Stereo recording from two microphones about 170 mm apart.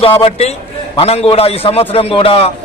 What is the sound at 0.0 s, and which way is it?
A man's voice, 35° left (ahead or behind).